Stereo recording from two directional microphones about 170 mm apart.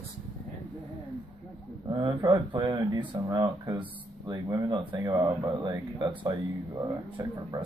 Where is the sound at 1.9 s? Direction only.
30° right (ahead or behind).